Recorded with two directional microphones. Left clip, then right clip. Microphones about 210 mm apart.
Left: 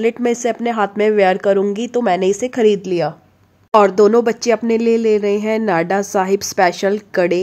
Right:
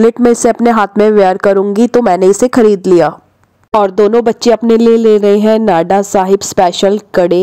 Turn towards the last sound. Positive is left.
turn(degrees=-30)  # may be behind; listen again after turning